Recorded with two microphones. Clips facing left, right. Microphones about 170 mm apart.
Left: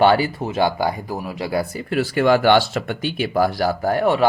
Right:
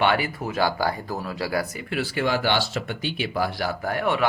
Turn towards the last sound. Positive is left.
turn(degrees=35)  # may be behind; listen again after turning